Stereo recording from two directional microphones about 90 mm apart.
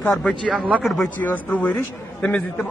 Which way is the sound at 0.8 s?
Centre (ahead or behind).